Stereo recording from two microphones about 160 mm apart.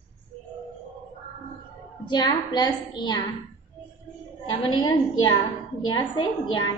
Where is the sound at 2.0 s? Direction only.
25° left (ahead or behind).